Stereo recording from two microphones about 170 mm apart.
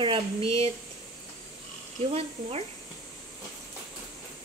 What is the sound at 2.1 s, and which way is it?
Speech, 40° right (ahead or behind).